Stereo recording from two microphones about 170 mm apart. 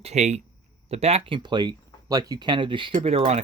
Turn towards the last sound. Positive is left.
turn(degrees=-40)  # may be behind; listen again after turning